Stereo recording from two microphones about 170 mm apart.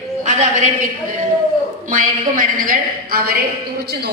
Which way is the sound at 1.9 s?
50° right (ahead or behind).